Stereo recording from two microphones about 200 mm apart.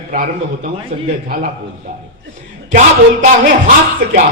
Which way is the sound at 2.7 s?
40° right (ahead or behind).